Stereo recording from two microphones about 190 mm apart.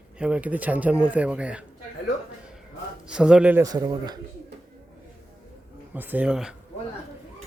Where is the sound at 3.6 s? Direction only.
20° right (ahead or behind).